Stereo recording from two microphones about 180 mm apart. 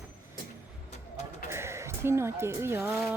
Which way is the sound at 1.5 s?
15° right (ahead or behind).